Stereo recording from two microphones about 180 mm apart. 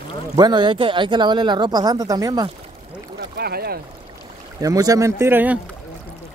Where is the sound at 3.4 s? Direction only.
60° right (ahead or behind).